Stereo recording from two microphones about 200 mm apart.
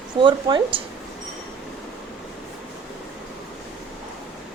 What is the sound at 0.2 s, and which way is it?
Speech, 20° right (ahead or behind).